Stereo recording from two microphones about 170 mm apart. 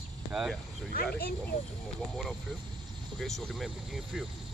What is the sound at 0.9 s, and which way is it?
Speech, 60° left (ahead or behind).